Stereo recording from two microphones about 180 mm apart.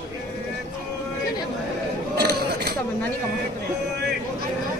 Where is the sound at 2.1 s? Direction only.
60° right (ahead or behind).